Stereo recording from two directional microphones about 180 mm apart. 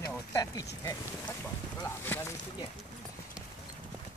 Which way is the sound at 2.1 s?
10° left (ahead or behind).